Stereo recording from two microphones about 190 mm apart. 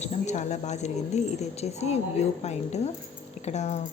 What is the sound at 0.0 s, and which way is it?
A woman's voice, 35° left (ahead or behind).